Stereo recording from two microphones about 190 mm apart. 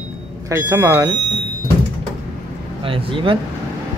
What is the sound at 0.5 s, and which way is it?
Speech, 15° right (ahead or behind).